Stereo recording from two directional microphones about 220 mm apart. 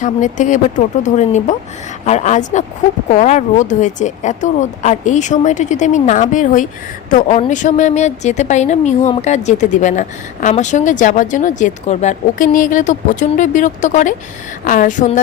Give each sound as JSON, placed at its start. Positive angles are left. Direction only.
{"t": 0.0, "sound": "a woman's voice", "side_deg": 35}